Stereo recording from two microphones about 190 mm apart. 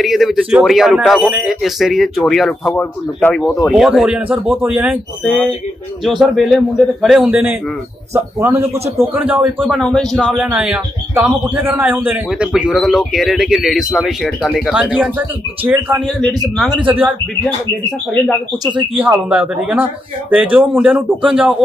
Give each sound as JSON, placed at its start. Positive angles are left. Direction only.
{"t": 0.0, "sound": "a man's voice", "side_deg": 0}
{"t": 5.2, "sound": "speech", "side_deg": 5}
{"t": 8.6, "sound": "a man's voice", "side_deg": -35}
{"t": 8.9, "sound": "speech", "side_deg": -10}
{"t": 18.6, "sound": "speech", "side_deg": -25}
{"t": 18.9, "sound": "speech", "side_deg": -5}